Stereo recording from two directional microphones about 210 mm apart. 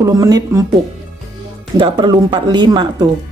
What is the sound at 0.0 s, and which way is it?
Speech, 15° right (ahead or behind).